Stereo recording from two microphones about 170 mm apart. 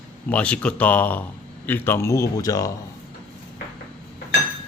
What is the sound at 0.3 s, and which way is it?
A man's voice, 5° left (ahead or behind).